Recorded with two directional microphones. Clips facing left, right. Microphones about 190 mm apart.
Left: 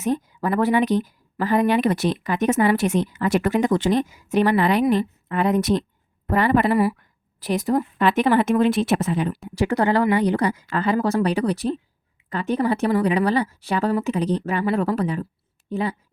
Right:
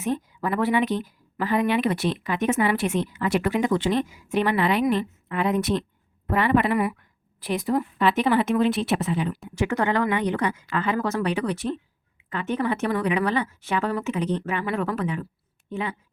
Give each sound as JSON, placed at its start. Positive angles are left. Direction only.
{"t": 0.0, "sound": "speech", "side_deg": 40}
{"t": 9.6, "sound": "speech", "side_deg": 35}